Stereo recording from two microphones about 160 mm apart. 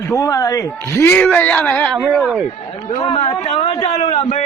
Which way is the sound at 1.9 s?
10° right (ahead or behind).